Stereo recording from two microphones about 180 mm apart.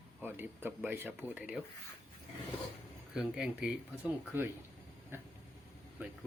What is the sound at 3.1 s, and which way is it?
A man's voice, 5° right (ahead or behind).